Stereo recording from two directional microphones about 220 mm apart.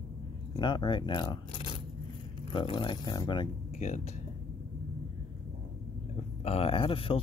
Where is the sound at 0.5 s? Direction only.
20° left (ahead or behind).